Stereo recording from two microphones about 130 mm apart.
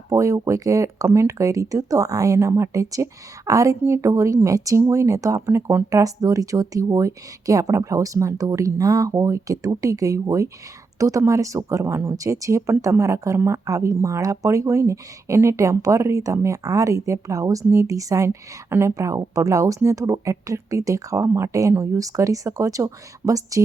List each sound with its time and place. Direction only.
0.1 s speech: 25° right (ahead or behind)